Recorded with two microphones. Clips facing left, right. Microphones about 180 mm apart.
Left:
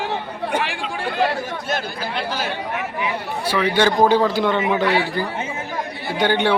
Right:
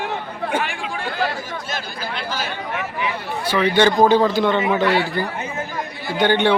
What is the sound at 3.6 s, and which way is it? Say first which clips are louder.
Speech: right 2 dB; 10° left (ahead or behind).